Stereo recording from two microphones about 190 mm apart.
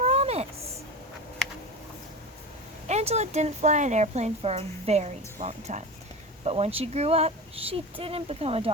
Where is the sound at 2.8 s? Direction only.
35° right (ahead or behind).